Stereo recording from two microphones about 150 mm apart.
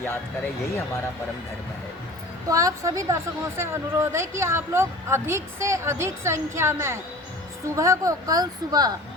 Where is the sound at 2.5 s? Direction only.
20° right (ahead or behind).